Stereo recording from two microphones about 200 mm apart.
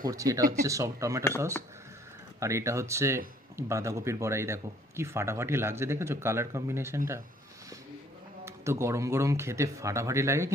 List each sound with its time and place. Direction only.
0.1 s speech: 15° right (ahead or behind)
2.4 s speech: 15° right (ahead or behind)
8.4 s speech: 15° right (ahead or behind)